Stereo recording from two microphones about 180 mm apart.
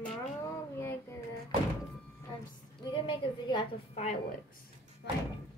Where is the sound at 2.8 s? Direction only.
30° left (ahead or behind).